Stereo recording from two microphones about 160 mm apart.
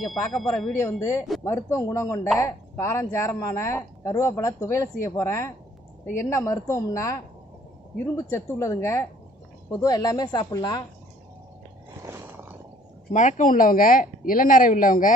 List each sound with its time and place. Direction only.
0.0 s speech: centre (ahead or behind)
0.7 s a woman's voice: 15° left (ahead or behind)
12.0 s a sound: 15° right (ahead or behind)
13.1 s speech: 50° left (ahead or behind)